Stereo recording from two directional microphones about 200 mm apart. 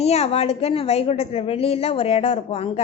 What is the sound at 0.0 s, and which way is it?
A woman's voice, 30° left (ahead or behind).